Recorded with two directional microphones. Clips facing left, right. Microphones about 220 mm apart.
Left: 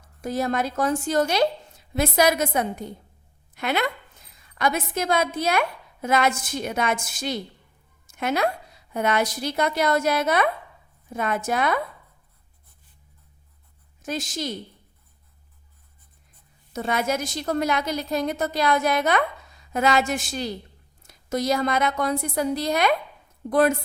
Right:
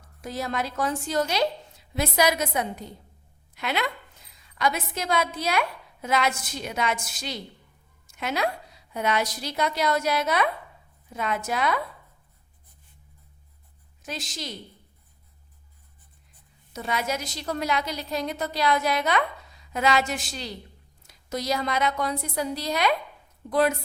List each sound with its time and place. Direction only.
0.2 s a woman's voice: 50° left (ahead or behind)
14.0 s a woman's voice: 50° left (ahead or behind)
16.7 s a woman's voice: 50° left (ahead or behind)